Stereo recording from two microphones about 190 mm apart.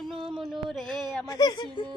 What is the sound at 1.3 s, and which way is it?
Speech, 20° left (ahead or behind).